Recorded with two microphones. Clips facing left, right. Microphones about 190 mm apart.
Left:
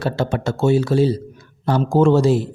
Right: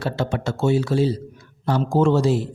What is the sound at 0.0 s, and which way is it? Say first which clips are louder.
A man's voice: left 3 dB; 45° left (ahead or behind).